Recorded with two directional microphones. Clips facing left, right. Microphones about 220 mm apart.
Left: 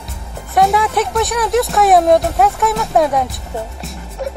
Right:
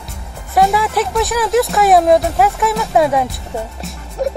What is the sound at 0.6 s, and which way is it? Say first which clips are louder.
Speech: even; centre (ahead or behind).